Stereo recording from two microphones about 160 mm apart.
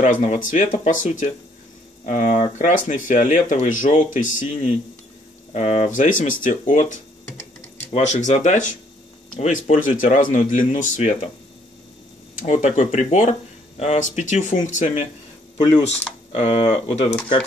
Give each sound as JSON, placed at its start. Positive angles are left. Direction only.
{"t": 0.0, "sound": "speech", "side_deg": 50}
{"t": 12.4, "sound": "speech", "side_deg": 50}
{"t": 16.3, "sound": "speech", "side_deg": 35}